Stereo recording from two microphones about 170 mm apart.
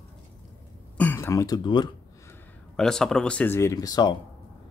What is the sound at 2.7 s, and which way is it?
Speech, 5° left (ahead or behind).